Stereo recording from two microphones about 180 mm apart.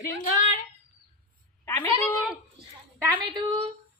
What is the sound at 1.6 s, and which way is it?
Cat, 15° left (ahead or behind).